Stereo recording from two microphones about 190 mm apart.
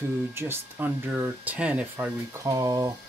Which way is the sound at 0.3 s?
10° right (ahead or behind).